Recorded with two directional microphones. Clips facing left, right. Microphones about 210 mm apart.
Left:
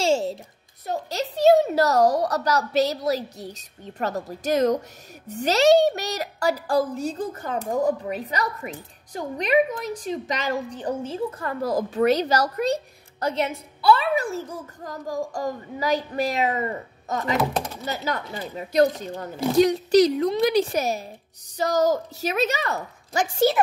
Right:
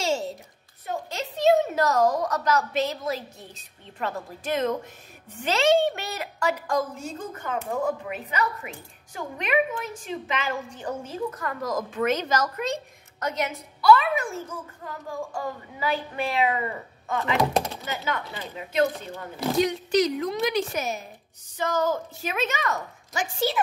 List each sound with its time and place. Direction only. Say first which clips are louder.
0.0 s a sound: left 5 dB; 30° left (ahead or behind)
0.8 s a woman's voice: left 4 dB; 35° left (ahead or behind)
17.4 s speech: right 1 dB; centre (ahead or behind)
17.8 s a woman's voice: left 2 dB; 40° left (ahead or behind)